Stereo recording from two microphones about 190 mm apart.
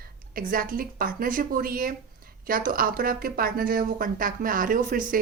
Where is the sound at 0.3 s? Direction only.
50° right (ahead or behind).